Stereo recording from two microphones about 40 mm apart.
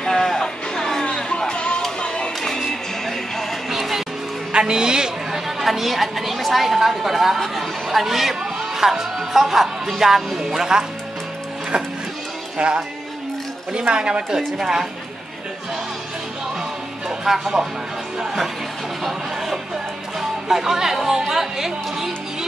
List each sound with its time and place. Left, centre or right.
0.0 s music: centre
1.0 s music: left
2.7 s music: centre
4.5 s a sound: right
5.6 s speech: centre
12.5 s a woman's voice: right
17.2 s speech: centre
18.2 s music: centre
19.0 s a sound: centre
20.2 s music: centre